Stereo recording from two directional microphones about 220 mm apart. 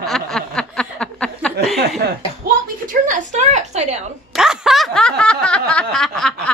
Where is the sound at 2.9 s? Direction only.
35° right (ahead or behind).